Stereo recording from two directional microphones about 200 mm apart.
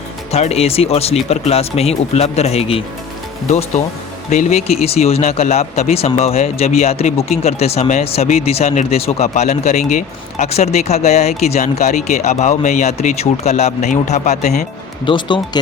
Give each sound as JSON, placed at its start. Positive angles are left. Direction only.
{"t": 0.3, "sound": "speech", "side_deg": 30}
{"t": 4.3, "sound": "speech", "side_deg": 35}
{"t": 15.0, "sound": "speech", "side_deg": 25}